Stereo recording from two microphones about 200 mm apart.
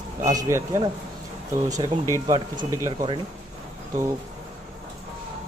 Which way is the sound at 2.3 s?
20° right (ahead or behind).